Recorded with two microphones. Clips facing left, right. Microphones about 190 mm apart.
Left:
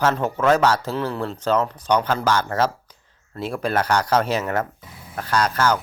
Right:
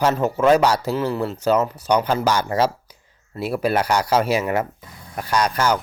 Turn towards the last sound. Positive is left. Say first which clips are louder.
# right 1 dB
turn(degrees=-15)  # may be behind; listen again after turning